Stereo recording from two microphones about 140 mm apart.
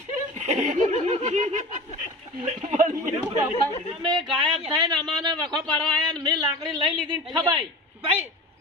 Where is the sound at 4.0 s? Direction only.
35° right (ahead or behind).